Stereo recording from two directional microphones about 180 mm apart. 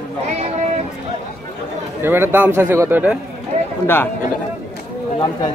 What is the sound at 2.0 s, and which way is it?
A man's voice, 10° right (ahead or behind).